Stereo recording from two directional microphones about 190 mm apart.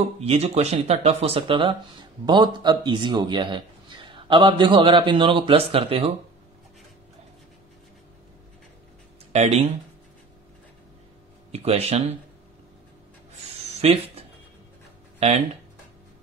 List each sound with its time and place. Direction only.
0.2 s speech: 35° right (ahead or behind)
9.3 s speech: 35° right (ahead or behind)
11.5 s speech: 35° right (ahead or behind)
13.7 s speech: 30° right (ahead or behind)